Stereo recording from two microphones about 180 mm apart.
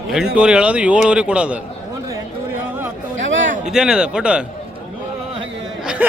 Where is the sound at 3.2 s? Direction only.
90° right.